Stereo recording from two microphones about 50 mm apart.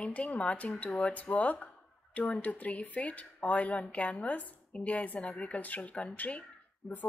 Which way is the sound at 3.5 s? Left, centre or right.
Centre.